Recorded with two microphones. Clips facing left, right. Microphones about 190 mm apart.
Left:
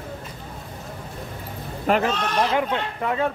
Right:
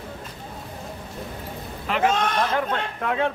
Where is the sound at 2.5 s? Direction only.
15° left (ahead or behind).